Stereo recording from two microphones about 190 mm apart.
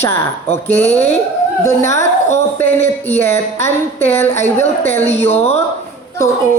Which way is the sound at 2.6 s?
10° left (ahead or behind).